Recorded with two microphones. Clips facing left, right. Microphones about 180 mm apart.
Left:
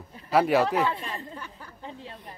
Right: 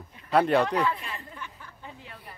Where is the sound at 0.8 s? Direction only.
30° left (ahead or behind).